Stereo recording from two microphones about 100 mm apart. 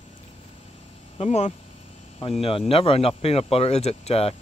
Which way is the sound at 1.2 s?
90° left.